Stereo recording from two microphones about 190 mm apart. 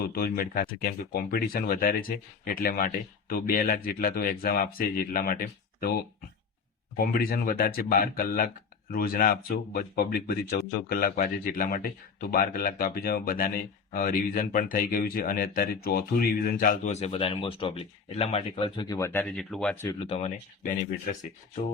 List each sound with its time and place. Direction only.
0.1 s speech: 50° left (ahead or behind); by 19.2 s 15° left (ahead or behind)
19.2 s speech: 5° left (ahead or behind)
20.0 s speech: 30° left (ahead or behind)